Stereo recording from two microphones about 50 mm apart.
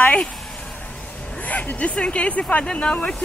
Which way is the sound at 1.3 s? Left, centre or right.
Left.